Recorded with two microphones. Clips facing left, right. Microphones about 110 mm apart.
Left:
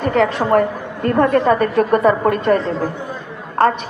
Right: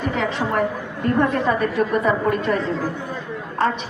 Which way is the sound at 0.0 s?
60° left (ahead or behind).